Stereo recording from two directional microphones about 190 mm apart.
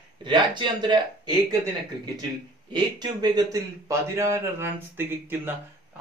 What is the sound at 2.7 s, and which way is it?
A man's voice, 20° right (ahead or behind).